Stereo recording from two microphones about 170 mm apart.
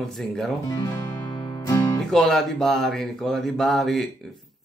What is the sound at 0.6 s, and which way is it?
Music, 20° left (ahead or behind).